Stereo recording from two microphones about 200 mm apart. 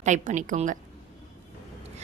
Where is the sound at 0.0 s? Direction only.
40° right (ahead or behind).